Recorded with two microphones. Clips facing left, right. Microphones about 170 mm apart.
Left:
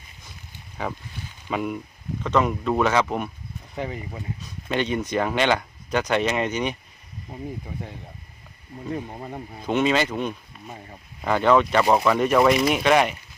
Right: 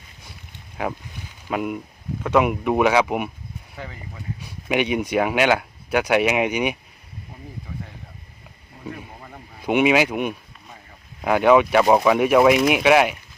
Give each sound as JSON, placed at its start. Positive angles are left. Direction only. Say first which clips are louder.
{"t": 1.5, "sound": "speech", "louder": "right 2 dB", "side_deg": -5}
{"t": 3.8, "sound": "speech", "louder": "left 7 dB", "side_deg": 20}
{"t": 4.4, "sound": "speech", "louder": "right 4 dB", "side_deg": -10}
{"t": 9.1, "sound": "speech", "louder": "left 7 dB", "side_deg": 25}
{"t": 9.6, "sound": "speech", "louder": "right 4 dB", "side_deg": -15}